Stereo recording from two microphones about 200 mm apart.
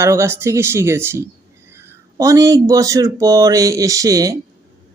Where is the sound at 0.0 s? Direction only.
15° right (ahead or behind).